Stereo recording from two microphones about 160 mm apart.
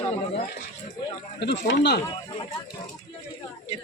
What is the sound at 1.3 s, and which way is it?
Speech, 90° left.